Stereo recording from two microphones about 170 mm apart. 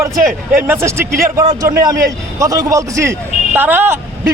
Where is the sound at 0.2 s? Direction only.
55° right (ahead or behind).